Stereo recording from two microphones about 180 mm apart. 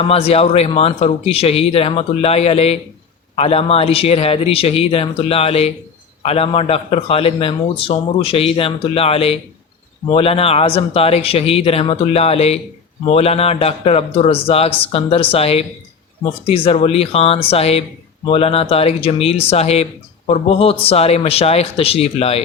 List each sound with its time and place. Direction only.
0.1 s speech: 35° left (ahead or behind)